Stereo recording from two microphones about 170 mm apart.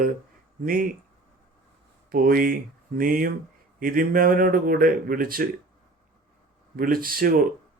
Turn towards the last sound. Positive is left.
turn(degrees=-60)  # may be behind; listen again after turning